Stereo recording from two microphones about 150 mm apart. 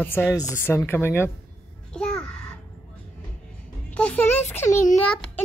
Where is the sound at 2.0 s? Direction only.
5° left (ahead or behind).